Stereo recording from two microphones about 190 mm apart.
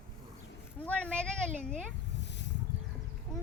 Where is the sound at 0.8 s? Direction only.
5° left (ahead or behind).